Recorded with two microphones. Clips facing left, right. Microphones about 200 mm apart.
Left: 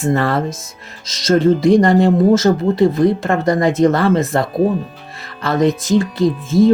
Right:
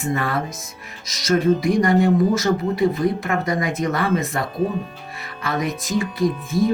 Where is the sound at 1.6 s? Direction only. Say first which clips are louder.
Left 6 dB; 85° left.